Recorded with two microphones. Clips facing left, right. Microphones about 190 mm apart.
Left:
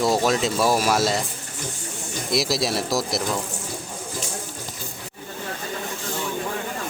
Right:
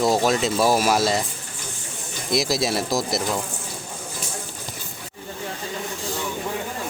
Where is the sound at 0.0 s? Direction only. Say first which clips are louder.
Right 1 dB; centre (ahead or behind).